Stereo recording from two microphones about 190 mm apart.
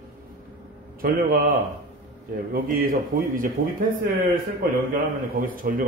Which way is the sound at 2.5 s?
50° right (ahead or behind).